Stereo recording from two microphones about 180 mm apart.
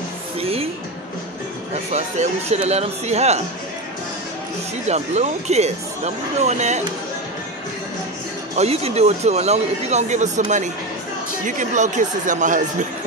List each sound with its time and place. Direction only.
0.4 s music: 35° right (ahead or behind)
1.9 s speech: 40° right (ahead or behind)
4.8 s speech: 40° right (ahead or behind)
8.5 s speech: 35° right (ahead or behind)
11.4 s speech: 45° right (ahead or behind)